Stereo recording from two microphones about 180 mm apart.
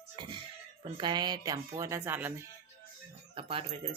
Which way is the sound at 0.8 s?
25° right (ahead or behind).